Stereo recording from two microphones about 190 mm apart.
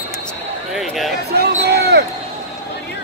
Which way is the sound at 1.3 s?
55° right (ahead or behind).